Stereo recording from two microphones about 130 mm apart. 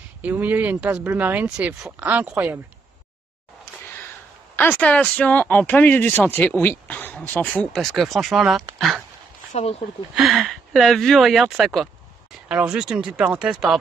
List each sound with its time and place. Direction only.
0.2 s speech: 15° right (ahead or behind)
4.6 s speech: 10° left (ahead or behind)
7.8 s speech: centre (ahead or behind)
9.5 s speech: 55° left (ahead or behind)
10.1 s speech: centre (ahead or behind)